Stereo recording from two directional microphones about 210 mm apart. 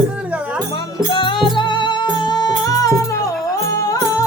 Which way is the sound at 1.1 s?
25° left (ahead or behind).